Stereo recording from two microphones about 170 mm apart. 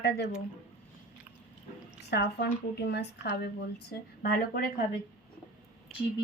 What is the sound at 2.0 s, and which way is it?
A woman's voice, 80° left.